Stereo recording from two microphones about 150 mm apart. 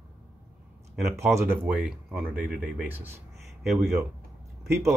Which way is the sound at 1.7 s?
5° right (ahead or behind).